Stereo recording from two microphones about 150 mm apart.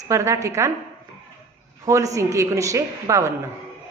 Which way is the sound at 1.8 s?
20° right (ahead or behind).